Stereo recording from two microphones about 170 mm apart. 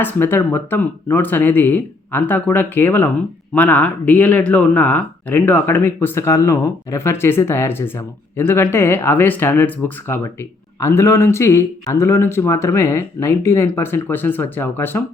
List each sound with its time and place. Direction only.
0.0 s speech: 10° left (ahead or behind)